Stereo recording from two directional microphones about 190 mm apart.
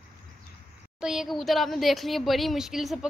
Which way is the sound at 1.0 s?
5° right (ahead or behind).